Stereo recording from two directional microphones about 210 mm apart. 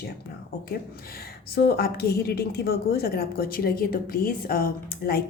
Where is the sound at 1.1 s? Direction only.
50° left (ahead or behind).